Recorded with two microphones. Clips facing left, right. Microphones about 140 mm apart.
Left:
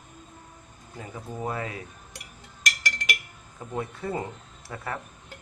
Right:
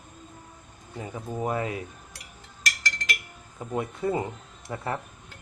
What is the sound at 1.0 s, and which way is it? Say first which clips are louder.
Speech: right 3 dB; 15° right (ahead or behind).